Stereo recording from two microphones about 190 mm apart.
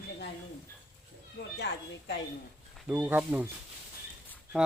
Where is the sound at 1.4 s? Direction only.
65° left (ahead or behind).